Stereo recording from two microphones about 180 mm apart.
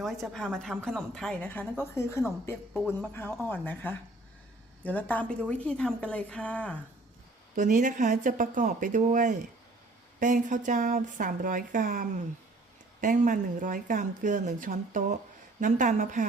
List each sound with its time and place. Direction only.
0.0 s a woman's voice: centre (ahead or behind)
7.5 s speech: 45° right (ahead or behind)